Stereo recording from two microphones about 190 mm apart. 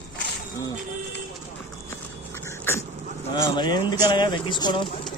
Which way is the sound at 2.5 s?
15° left (ahead or behind).